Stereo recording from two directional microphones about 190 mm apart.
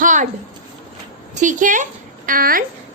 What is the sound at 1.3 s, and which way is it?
A woman's voice, 40° right (ahead or behind).